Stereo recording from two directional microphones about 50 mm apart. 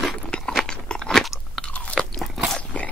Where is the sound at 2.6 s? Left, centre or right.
Left.